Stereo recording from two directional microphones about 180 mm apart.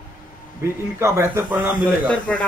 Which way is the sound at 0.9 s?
15° right (ahead or behind).